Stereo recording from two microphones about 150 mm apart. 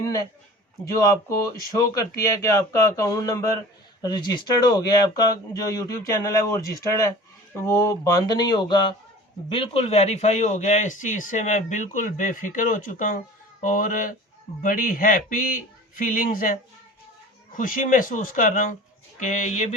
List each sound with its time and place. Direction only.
0.0 s a man's voice: 25° left (ahead or behind); by 19.7 s 50° left (ahead or behind)